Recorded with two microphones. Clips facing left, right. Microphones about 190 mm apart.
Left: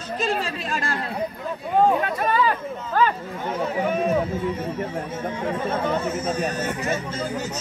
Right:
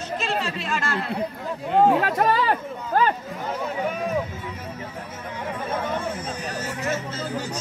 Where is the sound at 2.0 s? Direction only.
80° right.